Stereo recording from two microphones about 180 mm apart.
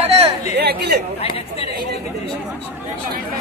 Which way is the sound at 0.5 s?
65° right (ahead or behind).